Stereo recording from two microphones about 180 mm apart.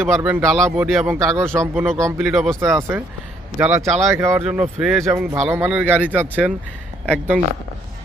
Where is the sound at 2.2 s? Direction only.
Centre (ahead or behind).